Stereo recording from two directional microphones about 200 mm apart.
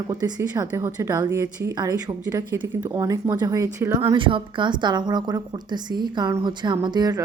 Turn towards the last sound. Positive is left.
turn(degrees=-20)  # may be behind; listen again after turning